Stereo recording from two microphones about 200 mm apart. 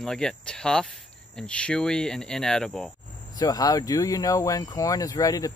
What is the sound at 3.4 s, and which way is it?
Speech, 20° left (ahead or behind).